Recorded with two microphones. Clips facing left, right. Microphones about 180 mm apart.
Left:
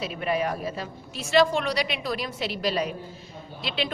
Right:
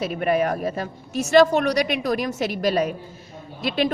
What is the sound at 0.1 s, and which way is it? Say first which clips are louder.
A woman's voice: right 5 dB; 50° right (ahead or behind).